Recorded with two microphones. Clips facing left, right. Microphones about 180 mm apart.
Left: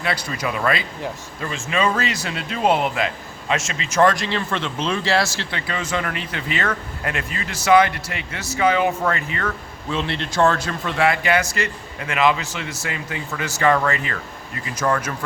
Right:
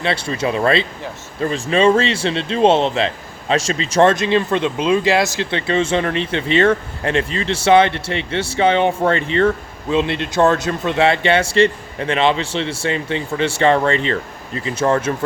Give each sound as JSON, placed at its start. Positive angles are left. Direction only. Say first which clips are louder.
{"t": 0.0, "sound": "speech", "louder": "right 5 dB", "side_deg": -25}
{"t": 9.9, "sound": "speech", "louder": "right 6 dB", "side_deg": -15}